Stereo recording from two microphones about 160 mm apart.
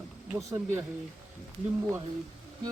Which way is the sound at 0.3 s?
15° right (ahead or behind).